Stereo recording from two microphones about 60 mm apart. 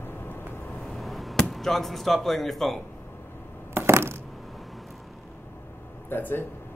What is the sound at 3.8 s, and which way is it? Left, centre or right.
Coin, right.